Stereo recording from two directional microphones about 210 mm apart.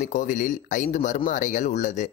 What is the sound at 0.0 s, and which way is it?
Speech, 40° left (ahead or behind).